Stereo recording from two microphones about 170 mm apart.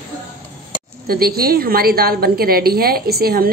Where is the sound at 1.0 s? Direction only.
60° right (ahead or behind).